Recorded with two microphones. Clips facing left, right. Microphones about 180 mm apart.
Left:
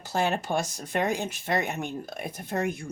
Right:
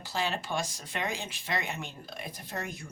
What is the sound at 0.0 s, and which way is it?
Speech, 50° left (ahead or behind).